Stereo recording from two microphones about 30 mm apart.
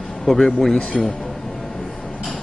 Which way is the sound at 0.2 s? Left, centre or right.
Centre.